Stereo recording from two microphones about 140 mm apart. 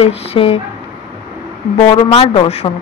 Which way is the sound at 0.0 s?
45° left (ahead or behind).